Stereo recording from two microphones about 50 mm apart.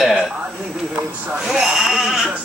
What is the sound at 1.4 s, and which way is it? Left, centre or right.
Speech, centre.